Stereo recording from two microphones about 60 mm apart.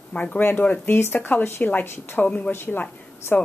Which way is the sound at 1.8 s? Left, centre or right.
Left.